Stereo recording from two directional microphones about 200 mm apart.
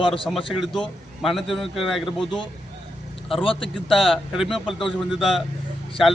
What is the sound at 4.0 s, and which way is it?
Speech, centre (ahead or behind).